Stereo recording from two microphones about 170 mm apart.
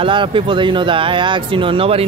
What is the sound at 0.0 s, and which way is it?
Speech, 30° right (ahead or behind).